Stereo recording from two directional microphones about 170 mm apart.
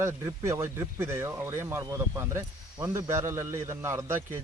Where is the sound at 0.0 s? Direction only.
15° right (ahead or behind).